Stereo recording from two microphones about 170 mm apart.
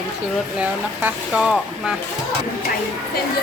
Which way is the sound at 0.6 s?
5° right (ahead or behind).